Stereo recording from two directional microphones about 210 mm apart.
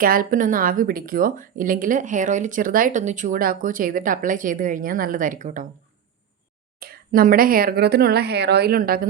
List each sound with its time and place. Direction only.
0.0 s speech: 45° right (ahead or behind)
6.7 s speech: 45° right (ahead or behind)